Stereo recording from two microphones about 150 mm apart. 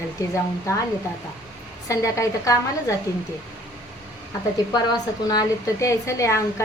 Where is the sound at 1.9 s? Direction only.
20° left (ahead or behind).